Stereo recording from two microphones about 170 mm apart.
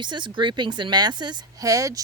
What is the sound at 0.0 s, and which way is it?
A woman's voice, 25° right (ahead or behind).